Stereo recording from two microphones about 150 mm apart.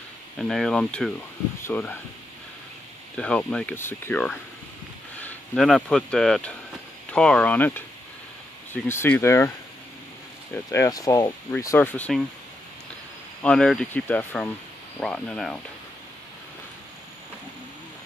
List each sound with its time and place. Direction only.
0.4 s speech: centre (ahead or behind)
3.2 s speech: 5° left (ahead or behind)
8.8 s speech: 15° left (ahead or behind)
10.5 s speech: 15° left (ahead or behind)
13.4 s speech: 5° left (ahead or behind)